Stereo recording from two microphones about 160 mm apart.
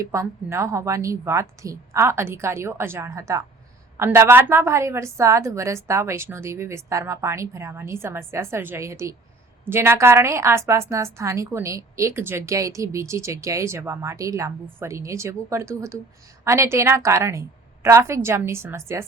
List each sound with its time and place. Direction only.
0.0 s a woman's voice: 20° right (ahead or behind)